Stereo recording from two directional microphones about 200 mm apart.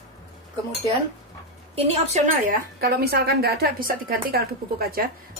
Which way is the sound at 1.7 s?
30° right (ahead or behind).